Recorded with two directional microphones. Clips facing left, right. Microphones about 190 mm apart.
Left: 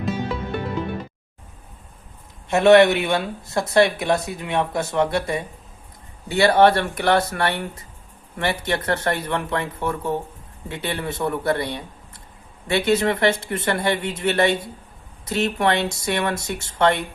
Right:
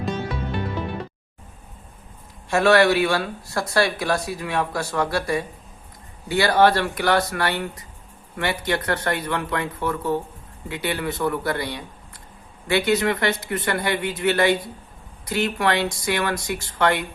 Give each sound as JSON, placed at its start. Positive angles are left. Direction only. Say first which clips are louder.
{"t": 2.5, "sound": "speech", "louder": "left 4 dB", "side_deg": 20}